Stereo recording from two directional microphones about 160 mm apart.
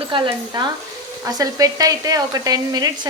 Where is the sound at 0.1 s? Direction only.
30° right (ahead or behind).